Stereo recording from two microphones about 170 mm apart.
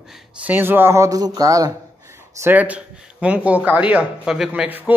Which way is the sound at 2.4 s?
10° right (ahead or behind).